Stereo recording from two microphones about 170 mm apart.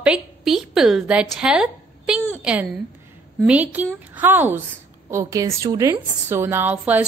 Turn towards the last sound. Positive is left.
turn(degrees=-10)  # may be behind; listen again after turning